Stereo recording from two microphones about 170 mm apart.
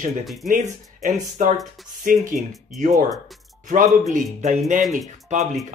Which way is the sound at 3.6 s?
45° right (ahead or behind).